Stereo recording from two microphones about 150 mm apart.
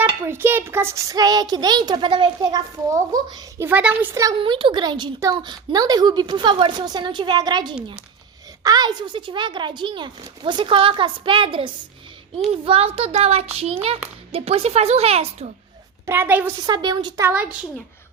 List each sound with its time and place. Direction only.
0.3 s a woman's voice: 15° right (ahead or behind)
3.7 s speech: 10° right (ahead or behind)
4.4 s a woman's voice: 35° right (ahead or behind)
16.0 s speech: 15° right (ahead or behind)
16.6 s a woman's voice: 25° right (ahead or behind)
17.2 s speech: 10° right (ahead or behind)